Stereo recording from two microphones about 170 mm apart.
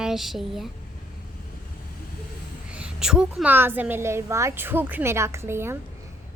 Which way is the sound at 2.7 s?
5° right (ahead or behind).